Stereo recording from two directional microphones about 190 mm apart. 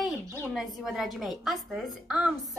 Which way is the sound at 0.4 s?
Centre (ahead or behind).